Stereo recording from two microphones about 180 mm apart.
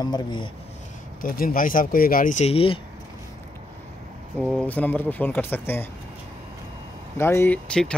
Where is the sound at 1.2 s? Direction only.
50° left (ahead or behind); by 2.8 s 30° left (ahead or behind).